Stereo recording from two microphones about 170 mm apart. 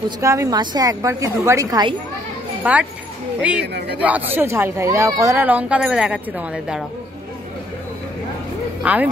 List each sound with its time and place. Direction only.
0.2 s speech: 20° right (ahead or behind)
2.6 s speech: 10° right (ahead or behind)
3.6 s speech: 75° right (ahead or behind)
4.0 s speech: 10° right (ahead or behind)
8.8 s speech: 10° right (ahead or behind)